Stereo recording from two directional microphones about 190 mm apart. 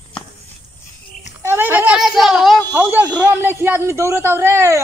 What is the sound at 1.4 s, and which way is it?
Speech, 10° right (ahead or behind).